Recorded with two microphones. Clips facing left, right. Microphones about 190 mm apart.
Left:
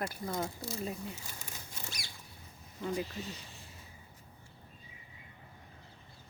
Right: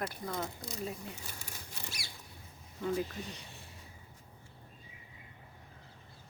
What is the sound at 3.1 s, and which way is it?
Speech, 60° right (ahead or behind).